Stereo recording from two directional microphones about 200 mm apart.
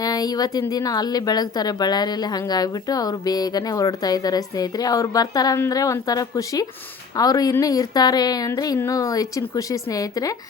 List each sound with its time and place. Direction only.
0.0 s speech: 20° left (ahead or behind)